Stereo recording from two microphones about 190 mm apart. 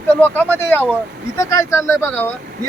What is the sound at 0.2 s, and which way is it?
Speech, 10° left (ahead or behind).